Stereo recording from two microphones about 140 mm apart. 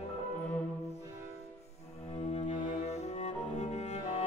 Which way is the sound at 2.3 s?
50° left (ahead or behind).